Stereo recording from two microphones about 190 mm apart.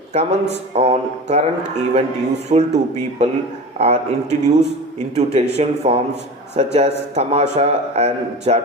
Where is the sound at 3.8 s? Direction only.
35° right (ahead or behind).